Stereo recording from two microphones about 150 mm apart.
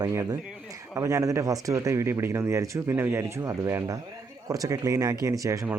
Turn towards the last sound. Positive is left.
turn(degrees=-20)  # may be behind; listen again after turning